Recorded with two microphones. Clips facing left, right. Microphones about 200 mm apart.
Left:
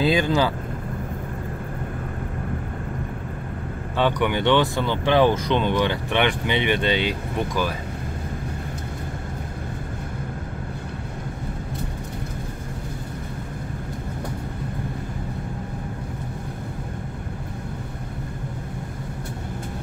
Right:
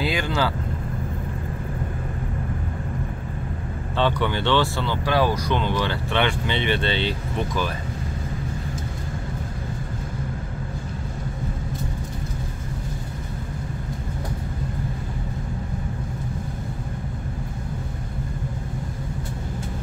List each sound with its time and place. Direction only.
0.0 s speech: 20° left (ahead or behind)
4.0 s speech: 15° left (ahead or behind)